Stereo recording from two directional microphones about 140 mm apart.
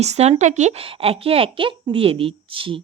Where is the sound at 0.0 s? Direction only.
50° right (ahead or behind).